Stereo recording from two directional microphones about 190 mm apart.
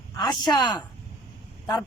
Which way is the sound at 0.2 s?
20° left (ahead or behind).